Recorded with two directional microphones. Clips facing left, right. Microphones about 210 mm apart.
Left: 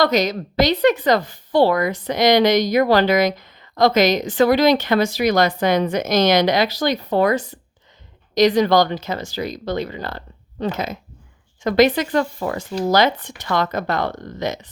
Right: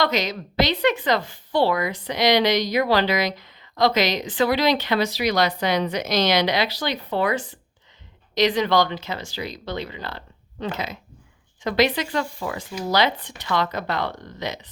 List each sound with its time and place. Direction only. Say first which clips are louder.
0.0 s a woman's voice: left 5 dB; 40° left (ahead or behind)